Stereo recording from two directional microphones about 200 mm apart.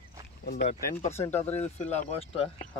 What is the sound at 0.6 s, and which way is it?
Speech, 35° left (ahead or behind).